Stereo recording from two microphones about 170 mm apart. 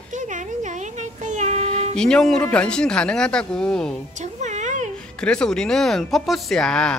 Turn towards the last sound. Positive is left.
turn(degrees=5)  # may be behind; listen again after turning